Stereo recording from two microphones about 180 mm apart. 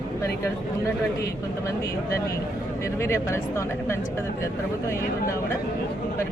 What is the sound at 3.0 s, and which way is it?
Speech, 15° left (ahead or behind).